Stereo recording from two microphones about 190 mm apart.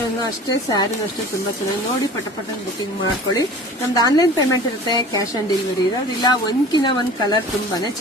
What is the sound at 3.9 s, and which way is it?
Speech, 20° left (ahead or behind).